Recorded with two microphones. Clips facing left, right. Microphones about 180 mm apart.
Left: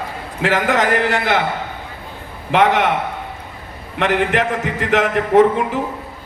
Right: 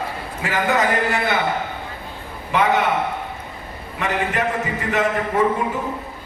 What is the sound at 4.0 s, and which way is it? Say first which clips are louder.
A man's voice: left 5 dB; 90° left.